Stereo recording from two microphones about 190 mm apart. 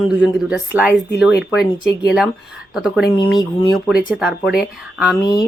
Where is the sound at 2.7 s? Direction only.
5° right (ahead or behind).